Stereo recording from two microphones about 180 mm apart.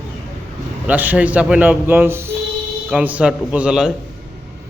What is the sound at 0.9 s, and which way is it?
A man's voice, 10° right (ahead or behind).